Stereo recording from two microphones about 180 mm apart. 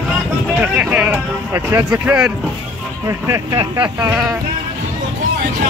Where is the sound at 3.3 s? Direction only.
25° right (ahead or behind).